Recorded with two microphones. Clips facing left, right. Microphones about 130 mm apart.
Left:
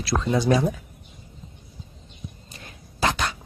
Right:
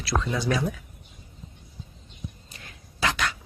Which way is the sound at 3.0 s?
30° left (ahead or behind).